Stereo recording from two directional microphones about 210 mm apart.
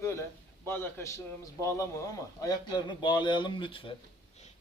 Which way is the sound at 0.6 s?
10° left (ahead or behind).